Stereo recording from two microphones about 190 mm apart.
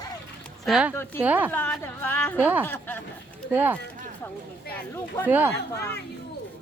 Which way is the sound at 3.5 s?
10° right (ahead or behind).